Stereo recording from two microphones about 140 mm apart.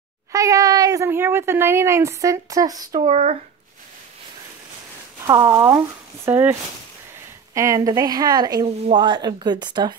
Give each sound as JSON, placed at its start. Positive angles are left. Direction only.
{"t": 0.3, "sound": "speech", "side_deg": -25}
{"t": 3.1, "sound": "speech", "side_deg": -50}
{"t": 5.2, "sound": "speech", "side_deg": -25}
{"t": 7.5, "sound": "speech", "side_deg": -20}